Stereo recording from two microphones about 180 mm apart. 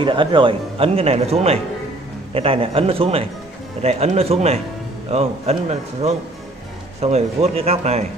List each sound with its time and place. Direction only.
0.0 s speech: 25° right (ahead or behind)